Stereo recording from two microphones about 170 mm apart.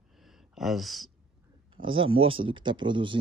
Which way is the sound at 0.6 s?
Centre (ahead or behind).